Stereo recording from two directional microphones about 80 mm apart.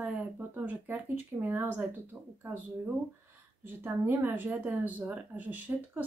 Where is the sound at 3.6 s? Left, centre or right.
Right.